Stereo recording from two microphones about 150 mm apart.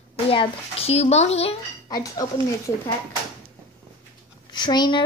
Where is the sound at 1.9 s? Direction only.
25° left (ahead or behind).